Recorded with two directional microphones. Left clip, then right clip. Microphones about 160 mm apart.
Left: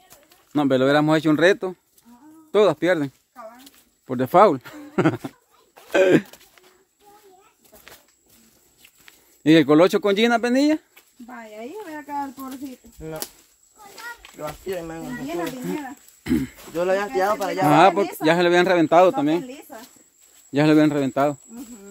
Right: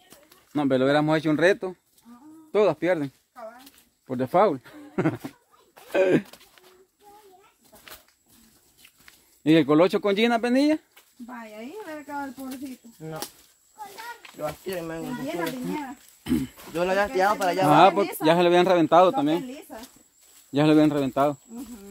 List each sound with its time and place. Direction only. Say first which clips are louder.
0.5 s speech: left 3 dB; 40° left (ahead or behind)
1.4 s speech: left 3 dB; 25° left (ahead or behind)
2.1 s a sound: right 1 dB; 40° left (ahead or behind)
2.5 s speech: left 4 dB; 30° left (ahead or behind)
3.6 s a sound: left 4 dB; 35° left (ahead or behind)
9.0 s speech: left 4 dB; 30° left (ahead or behind)
14.3 s speech: left 1 dB; 35° right (ahead or behind)
16.3 s speech: left 3 dB; 25° left (ahead or behind)
16.7 s speech: left 2 dB; 40° right (ahead or behind)
17.6 s speech: left 2 dB; 15° left (ahead or behind)